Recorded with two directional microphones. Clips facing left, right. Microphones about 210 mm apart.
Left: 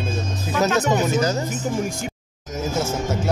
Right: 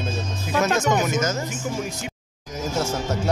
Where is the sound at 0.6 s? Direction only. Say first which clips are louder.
Left 2 dB; 35° left (ahead or behind).